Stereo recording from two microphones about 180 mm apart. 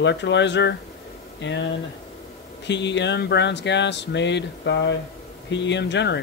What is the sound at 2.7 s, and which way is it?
Speech, 75° left (ahead or behind).